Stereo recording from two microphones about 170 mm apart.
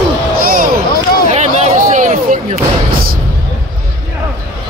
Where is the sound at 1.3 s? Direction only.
40° right (ahead or behind).